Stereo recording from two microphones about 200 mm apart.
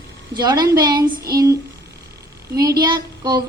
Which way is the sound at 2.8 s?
20° right (ahead or behind).